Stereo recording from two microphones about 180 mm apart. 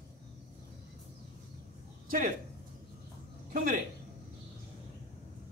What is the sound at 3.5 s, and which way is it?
Speech, 50° right (ahead or behind).